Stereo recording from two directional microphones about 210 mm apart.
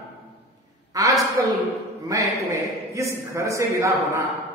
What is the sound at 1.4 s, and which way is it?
A man's voice, 15° right (ahead or behind).